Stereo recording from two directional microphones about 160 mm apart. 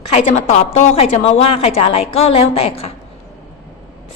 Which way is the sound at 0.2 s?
45° left (ahead or behind).